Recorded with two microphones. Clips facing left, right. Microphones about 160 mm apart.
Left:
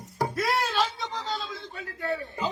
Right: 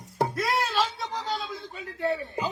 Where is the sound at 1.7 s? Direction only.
20° right (ahead or behind).